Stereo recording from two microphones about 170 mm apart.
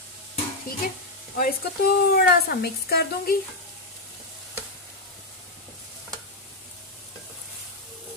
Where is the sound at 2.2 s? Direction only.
65° left (ahead or behind).